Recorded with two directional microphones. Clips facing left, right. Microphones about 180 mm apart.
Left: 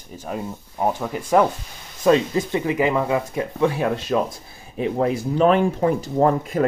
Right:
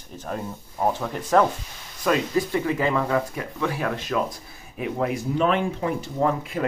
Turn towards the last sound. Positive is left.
turn(degrees=40)  # may be behind; listen again after turning